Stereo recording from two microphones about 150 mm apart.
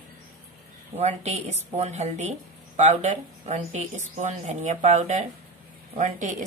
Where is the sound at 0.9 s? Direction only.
45° right (ahead or behind).